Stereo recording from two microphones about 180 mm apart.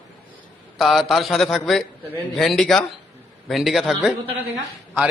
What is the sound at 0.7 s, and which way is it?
A man's voice, centre (ahead or behind).